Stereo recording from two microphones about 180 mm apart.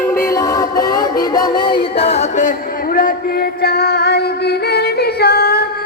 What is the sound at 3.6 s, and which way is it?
Music, 60° left (ahead or behind).